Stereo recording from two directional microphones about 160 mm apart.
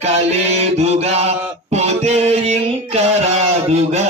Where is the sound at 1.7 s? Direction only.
45° right (ahead or behind).